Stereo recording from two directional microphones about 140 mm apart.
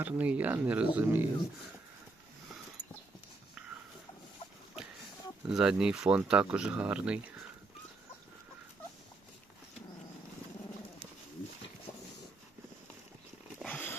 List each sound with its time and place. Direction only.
0.0 s speech: 10° right (ahead or behind)
5.5 s speech: 5° right (ahead or behind)
13.6 s cat: 10° left (ahead or behind)